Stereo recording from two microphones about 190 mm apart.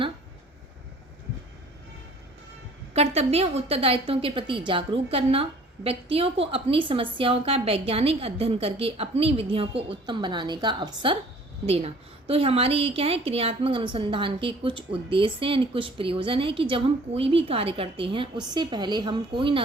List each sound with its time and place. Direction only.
2.9 s a woman's voice: 35° right (ahead or behind)